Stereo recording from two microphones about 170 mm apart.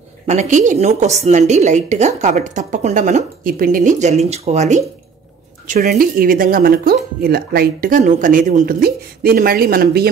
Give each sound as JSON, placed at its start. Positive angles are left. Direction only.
{"t": 0.3, "sound": "a woman's voice", "side_deg": -45}
{"t": 5.7, "sound": "speech", "side_deg": -60}